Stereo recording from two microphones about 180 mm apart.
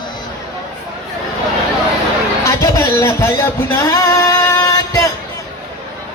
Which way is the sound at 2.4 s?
15° left (ahead or behind).